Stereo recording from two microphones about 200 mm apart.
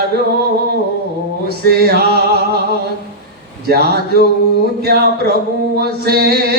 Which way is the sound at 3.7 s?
55° right (ahead or behind).